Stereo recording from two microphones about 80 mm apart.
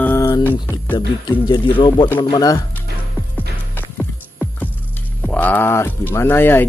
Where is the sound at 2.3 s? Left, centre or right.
Left.